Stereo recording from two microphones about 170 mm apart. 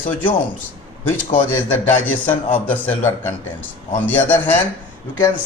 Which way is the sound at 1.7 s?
10° left (ahead or behind).